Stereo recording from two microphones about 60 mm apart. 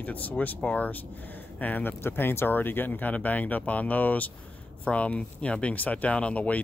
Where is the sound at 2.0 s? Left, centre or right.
Left.